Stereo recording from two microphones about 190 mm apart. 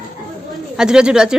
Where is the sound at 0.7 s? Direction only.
5° right (ahead or behind).